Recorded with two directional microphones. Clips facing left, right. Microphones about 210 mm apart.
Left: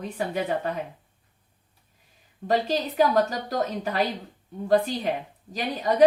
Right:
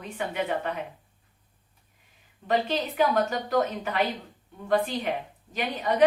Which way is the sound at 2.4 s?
40° left (ahead or behind).